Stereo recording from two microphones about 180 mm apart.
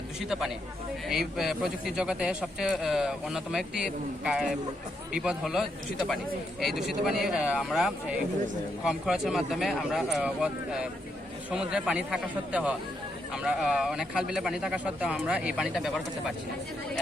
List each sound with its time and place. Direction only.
0.2 s a man's voice: centre (ahead or behind)